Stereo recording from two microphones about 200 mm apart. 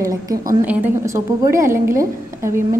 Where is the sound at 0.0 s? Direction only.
15° right (ahead or behind).